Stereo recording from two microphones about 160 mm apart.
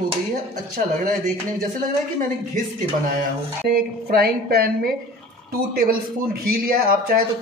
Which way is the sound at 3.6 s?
75° right (ahead or behind).